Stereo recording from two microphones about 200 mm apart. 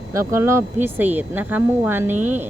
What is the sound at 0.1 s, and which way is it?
A woman's voice, 15° right (ahead or behind).